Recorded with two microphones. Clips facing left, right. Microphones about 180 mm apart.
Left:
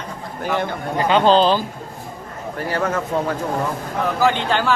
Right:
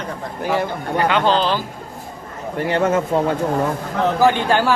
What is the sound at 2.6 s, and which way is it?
Speech, 25° right (ahead or behind).